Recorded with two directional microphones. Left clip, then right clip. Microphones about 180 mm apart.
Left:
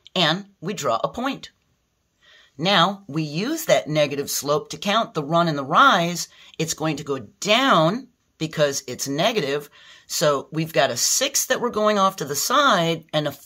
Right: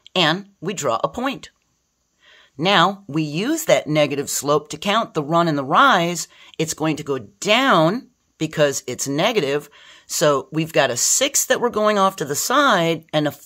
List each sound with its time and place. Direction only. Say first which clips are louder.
0.1 s speech: right 2 dB; 35° right (ahead or behind)
2.5 s speech: right 3 dB; 40° right (ahead or behind)